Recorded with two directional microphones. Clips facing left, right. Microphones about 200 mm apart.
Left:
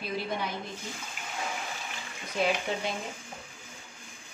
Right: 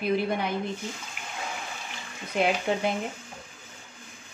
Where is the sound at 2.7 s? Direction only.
55° right (ahead or behind).